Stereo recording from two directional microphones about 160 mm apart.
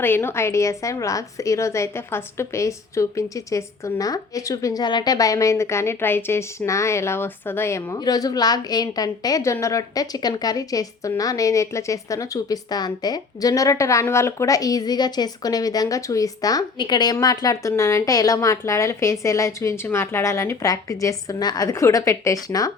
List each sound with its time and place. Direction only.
0.0 s a woman's voice: 15° left (ahead or behind)